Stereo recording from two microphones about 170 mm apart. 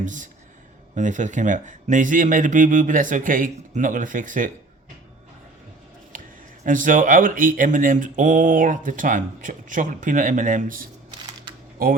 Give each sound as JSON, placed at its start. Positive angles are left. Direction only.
{"t": 0.0, "sound": "speech", "side_deg": -50}
{"t": 6.7, "sound": "speech", "side_deg": -50}